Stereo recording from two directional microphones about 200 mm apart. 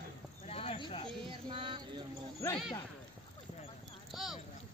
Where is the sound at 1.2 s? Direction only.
25° right (ahead or behind).